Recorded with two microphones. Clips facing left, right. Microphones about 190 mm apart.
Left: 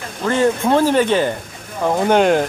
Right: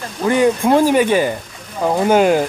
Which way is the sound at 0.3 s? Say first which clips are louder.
Right 2 dB; 15° right (ahead or behind).